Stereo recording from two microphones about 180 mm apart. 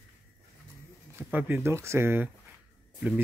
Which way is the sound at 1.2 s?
10° right (ahead or behind).